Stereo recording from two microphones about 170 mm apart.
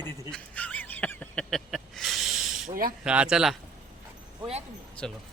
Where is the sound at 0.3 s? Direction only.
5° left (ahead or behind).